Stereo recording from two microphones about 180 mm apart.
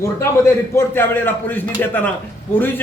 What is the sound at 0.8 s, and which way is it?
A man's voice, 10° left (ahead or behind).